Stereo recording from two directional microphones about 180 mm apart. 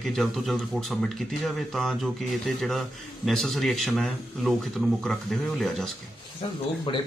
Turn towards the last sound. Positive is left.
turn(degrees=30)  # may be behind; listen again after turning